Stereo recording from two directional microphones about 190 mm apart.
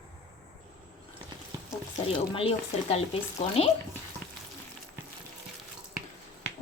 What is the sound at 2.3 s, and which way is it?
Speech, 30° left (ahead or behind).